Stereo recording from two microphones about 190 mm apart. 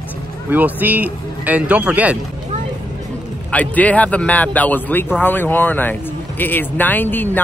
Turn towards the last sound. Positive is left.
turn(degrees=10)  # may be behind; listen again after turning